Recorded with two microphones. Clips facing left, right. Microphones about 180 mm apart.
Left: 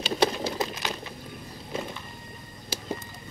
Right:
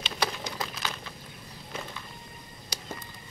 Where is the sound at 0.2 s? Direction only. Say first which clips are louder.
Left 7 dB; 30° left (ahead or behind).